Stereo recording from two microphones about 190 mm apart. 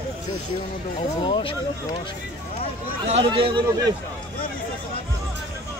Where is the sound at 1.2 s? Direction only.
25° left (ahead or behind).